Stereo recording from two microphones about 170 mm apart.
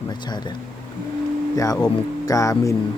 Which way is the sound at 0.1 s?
25° left (ahead or behind).